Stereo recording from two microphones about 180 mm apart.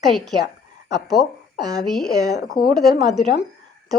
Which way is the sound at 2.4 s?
55° left (ahead or behind).